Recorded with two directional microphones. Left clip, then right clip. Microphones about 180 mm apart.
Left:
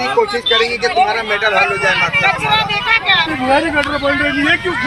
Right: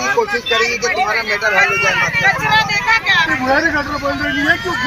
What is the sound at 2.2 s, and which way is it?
Speech, 30° left (ahead or behind).